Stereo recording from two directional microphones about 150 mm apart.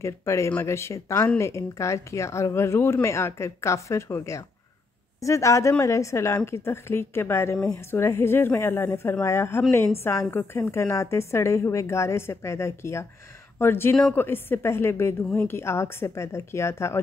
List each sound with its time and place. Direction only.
0.0 s a woman's voice: 20° left (ahead or behind)